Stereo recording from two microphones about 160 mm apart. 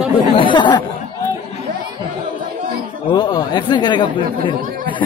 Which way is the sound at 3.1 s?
25° left (ahead or behind).